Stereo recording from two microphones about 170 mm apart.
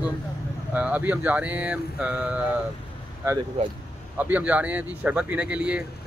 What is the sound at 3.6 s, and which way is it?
Speech, 35° right (ahead or behind).